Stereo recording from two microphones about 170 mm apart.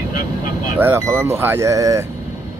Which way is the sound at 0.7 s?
15° right (ahead or behind).